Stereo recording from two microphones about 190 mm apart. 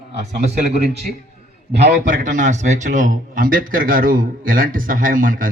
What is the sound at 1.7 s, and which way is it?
Speech, 65° right (ahead or behind).